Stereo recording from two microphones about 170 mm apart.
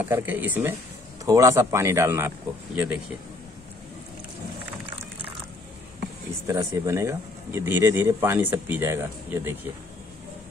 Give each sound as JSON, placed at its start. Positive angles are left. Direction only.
{"t": 0.0, "sound": "speech", "side_deg": -10}
{"t": 6.4, "sound": "speech", "side_deg": -20}